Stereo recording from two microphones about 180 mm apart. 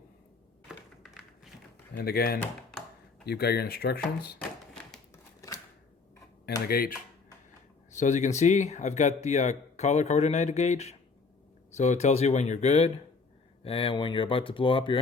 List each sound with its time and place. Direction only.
2.0 s speech: 60° left (ahead or behind)
2.4 s computer keyboard: 5° left (ahead or behind)
3.2 s speech: 60° left (ahead or behind)
5.1 s scissors: 20° left (ahead or behind)
6.7 s speech: 55° left (ahead or behind)
7.9 s speech: 40° left (ahead or behind)